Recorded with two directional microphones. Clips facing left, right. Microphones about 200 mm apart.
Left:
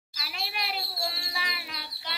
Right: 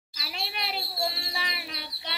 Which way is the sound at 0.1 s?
25° right (ahead or behind).